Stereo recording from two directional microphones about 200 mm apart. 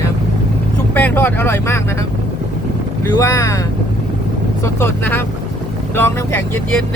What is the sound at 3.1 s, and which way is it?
Speech, 15° left (ahead or behind).